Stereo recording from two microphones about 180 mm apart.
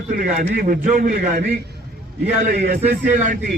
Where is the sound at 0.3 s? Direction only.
50° right (ahead or behind).